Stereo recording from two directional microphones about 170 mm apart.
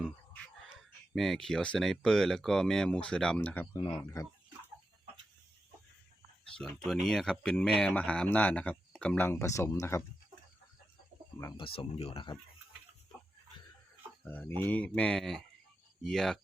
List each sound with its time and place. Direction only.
1.1 s speech: centre (ahead or behind)
3.7 s speech: 25° left (ahead or behind)
6.6 s speech: 5° left (ahead or behind)
11.5 s speech: 30° left (ahead or behind)
14.3 s speech: 10° left (ahead or behind)